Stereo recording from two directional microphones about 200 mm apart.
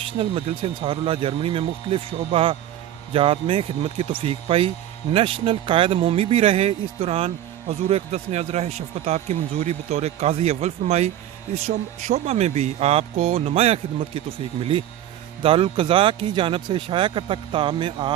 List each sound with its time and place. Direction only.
0.0 s speech: 25° right (ahead or behind)